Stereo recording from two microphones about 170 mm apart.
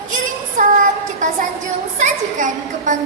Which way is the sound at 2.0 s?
50° right (ahead or behind).